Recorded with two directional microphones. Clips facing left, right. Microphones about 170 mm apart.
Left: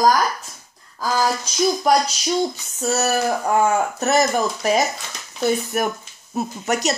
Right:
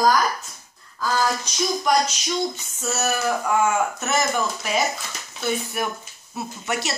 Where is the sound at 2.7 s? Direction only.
35° left (ahead or behind).